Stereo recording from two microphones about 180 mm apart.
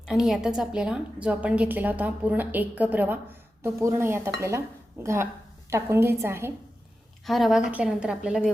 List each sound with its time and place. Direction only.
0.0 s a woman's voice: centre (ahead or behind)
7.3 s a woman's voice: centre (ahead or behind)